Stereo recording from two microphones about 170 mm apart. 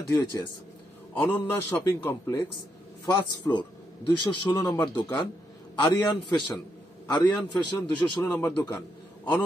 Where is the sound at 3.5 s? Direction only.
25° left (ahead or behind).